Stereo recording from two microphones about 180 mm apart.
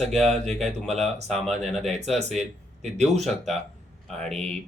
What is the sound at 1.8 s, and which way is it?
Speech, 40° right (ahead or behind).